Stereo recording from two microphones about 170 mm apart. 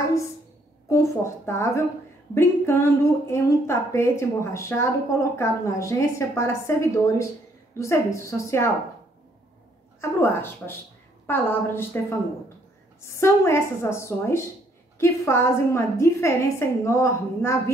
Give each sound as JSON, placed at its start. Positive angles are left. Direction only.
{"t": 0.8, "sound": "a woman's voice", "side_deg": 15}
{"t": 9.9, "sound": "a woman's voice", "side_deg": 15}